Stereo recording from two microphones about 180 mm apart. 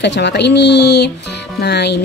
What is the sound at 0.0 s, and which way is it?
A woman's voice, 75° left (ahead or behind).